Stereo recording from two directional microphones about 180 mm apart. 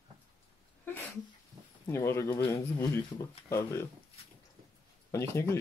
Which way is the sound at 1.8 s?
15° left (ahead or behind).